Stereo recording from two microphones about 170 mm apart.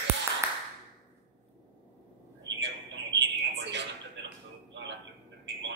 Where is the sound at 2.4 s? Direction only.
90° right.